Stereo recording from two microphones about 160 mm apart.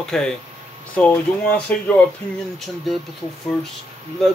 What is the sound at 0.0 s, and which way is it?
Speech, 5° left (ahead or behind).